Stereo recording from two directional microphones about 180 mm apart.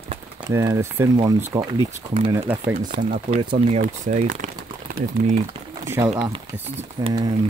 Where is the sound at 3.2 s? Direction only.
40° right (ahead or behind).